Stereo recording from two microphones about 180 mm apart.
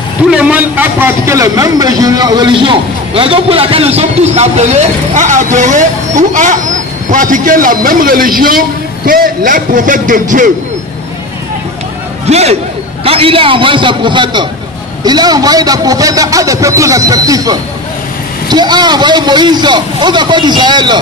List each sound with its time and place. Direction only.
0.3 s a man's voice: 5° right (ahead or behind); by 10.5 s 45° right (ahead or behind)
12.3 s a man's voice: 35° right (ahead or behind)